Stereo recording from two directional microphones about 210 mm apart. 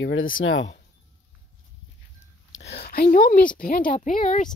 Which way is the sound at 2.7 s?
50° left (ahead or behind).